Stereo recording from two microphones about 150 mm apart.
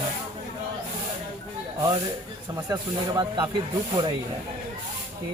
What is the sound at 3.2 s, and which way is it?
Speech, 30° right (ahead or behind).